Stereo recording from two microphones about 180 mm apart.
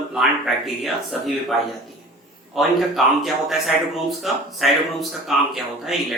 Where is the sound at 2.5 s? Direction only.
Centre (ahead or behind).